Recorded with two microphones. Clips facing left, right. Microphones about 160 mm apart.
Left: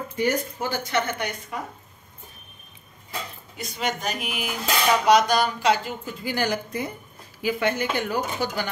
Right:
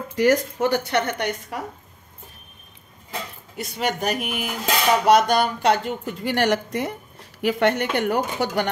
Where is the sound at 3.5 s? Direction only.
65° right (ahead or behind).